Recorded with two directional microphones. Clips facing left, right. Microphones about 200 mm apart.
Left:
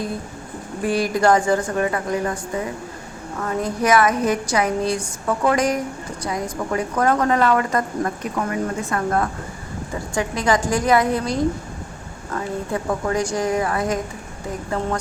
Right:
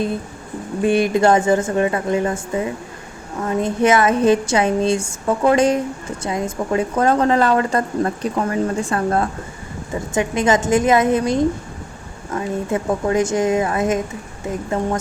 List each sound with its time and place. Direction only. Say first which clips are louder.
0.8 s a woman's voice: right 4 dB; 25° right (ahead or behind)